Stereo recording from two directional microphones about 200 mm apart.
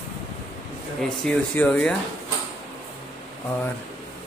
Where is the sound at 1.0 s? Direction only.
5° left (ahead or behind).